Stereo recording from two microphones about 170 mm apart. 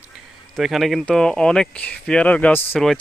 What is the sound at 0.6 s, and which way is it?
Speech, centre (ahead or behind).